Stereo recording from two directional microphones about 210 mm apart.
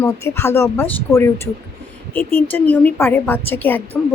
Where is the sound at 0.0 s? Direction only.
15° left (ahead or behind).